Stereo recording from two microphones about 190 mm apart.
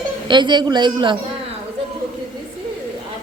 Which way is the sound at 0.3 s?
25° right (ahead or behind).